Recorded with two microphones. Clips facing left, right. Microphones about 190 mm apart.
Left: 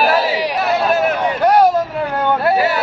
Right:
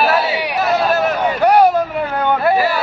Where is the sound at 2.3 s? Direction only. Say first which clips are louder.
Right 1 dB; centre (ahead or behind).